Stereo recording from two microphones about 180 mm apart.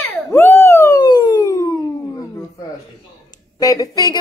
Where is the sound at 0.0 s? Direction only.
15° left (ahead or behind).